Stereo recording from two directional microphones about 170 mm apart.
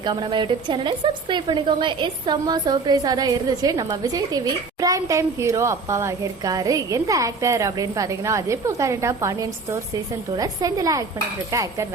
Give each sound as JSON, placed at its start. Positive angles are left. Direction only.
{"t": 0.0, "sound": "a woman's voice", "side_deg": -25}